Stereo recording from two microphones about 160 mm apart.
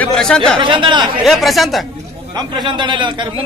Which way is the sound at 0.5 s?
30° right (ahead or behind).